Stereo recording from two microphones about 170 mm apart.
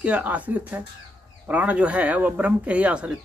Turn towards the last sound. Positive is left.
turn(degrees=-5)  # may be behind; listen again after turning